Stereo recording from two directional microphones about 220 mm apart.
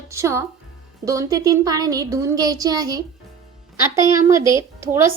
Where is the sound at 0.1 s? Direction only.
10° right (ahead or behind).